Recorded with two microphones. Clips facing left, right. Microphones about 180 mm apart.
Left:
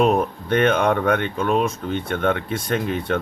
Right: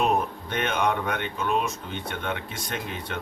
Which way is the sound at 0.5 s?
55° left (ahead or behind).